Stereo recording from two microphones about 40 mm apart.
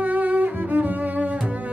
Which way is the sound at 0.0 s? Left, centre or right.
Right.